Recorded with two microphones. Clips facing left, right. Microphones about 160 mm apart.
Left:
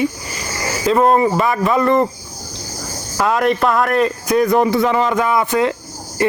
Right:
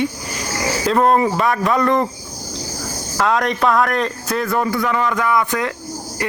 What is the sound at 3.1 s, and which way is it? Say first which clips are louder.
A man's voice: left 2 dB; 5° left (ahead or behind).